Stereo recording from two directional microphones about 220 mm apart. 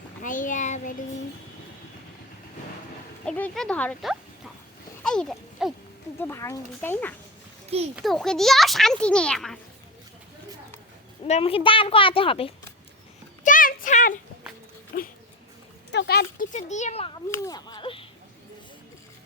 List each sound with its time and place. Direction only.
0.2 s a child's voice: 35° left (ahead or behind)
3.2 s speech: 5° left (ahead or behind)
5.0 s a sound: 5° left (ahead or behind)
6.1 s a child's voice: 10° left (ahead or behind)
11.3 s a woman's voice: 25° left (ahead or behind)
13.4 s a sound: 40° left (ahead or behind)
14.9 s speech: 45° left (ahead or behind); by 17.1 s 30° left (ahead or behind)
17.3 s speech: 15° left (ahead or behind)